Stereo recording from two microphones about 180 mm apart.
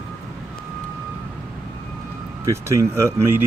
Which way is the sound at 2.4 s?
15° right (ahead or behind).